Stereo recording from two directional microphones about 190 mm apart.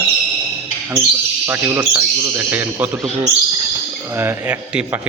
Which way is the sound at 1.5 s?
10° right (ahead or behind).